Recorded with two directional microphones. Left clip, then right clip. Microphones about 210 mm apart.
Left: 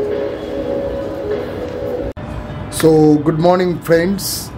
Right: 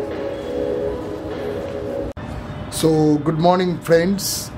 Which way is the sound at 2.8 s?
Centre (ahead or behind).